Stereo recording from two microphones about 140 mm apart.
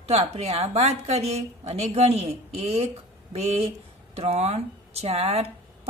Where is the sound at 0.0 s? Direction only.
45° right (ahead or behind).